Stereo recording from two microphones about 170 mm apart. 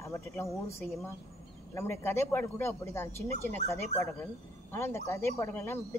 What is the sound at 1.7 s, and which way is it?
Speech, 15° left (ahead or behind).